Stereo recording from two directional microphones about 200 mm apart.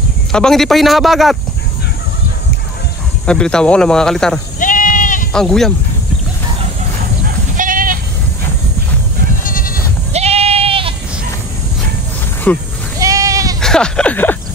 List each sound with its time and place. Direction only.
0.3 s a man's voice: centre (ahead or behind)
3.3 s a man's voice: 5° left (ahead or behind)
4.6 s sheep: 40° left (ahead or behind)
5.3 s a man's voice: 5° left (ahead or behind)
7.5 s sheep: 45° right (ahead or behind)
9.4 s goat: 45° left (ahead or behind)
10.1 s sheep: 30° right (ahead or behind)
12.5 s speech: 10° left (ahead or behind)
13.0 s goat: 15° right (ahead or behind)
13.6 s speech: 5° left (ahead or behind)